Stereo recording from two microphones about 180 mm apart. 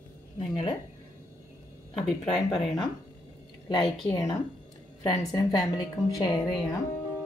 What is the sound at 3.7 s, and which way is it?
Speech, 25° left (ahead or behind).